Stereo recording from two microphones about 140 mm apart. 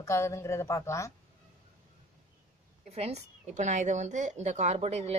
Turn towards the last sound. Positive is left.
turn(degrees=-50)  # may be behind; listen again after turning